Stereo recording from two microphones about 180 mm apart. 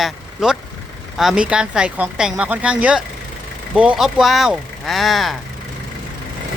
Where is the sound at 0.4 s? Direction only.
5° right (ahead or behind).